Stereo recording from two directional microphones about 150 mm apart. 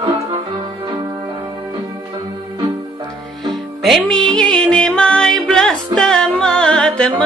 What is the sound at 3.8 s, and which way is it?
Music, centre (ahead or behind).